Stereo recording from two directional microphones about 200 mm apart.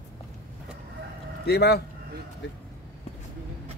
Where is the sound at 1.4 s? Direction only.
55° left (ahead or behind).